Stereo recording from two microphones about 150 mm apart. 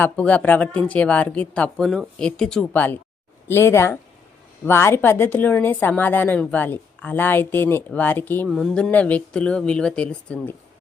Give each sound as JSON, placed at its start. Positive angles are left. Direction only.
{"t": 0.0, "sound": "a woman's voice", "side_deg": 10}
{"t": 8.4, "sound": "a woman's voice", "side_deg": 0}